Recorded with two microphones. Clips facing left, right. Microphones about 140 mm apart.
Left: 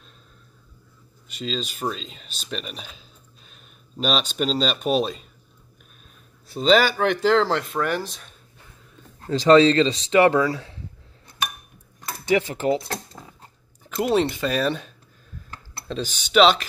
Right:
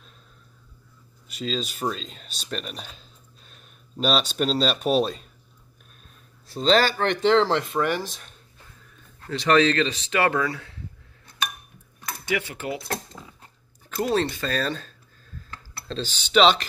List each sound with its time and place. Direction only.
1.3 s speech: centre (ahead or behind)
6.6 s speech: 10° left (ahead or behind)
9.2 s speech: 30° left (ahead or behind)
12.3 s speech: 35° left (ahead or behind)
14.0 s speech: 20° left (ahead or behind)